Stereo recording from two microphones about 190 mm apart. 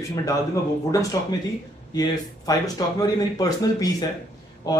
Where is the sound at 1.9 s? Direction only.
20° left (ahead or behind).